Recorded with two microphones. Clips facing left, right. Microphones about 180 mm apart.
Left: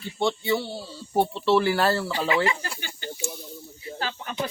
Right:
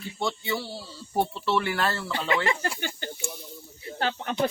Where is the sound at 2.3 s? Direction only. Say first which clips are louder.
Even; 50° right (ahead or behind).